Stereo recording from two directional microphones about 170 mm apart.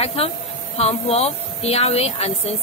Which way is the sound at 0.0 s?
35° left (ahead or behind).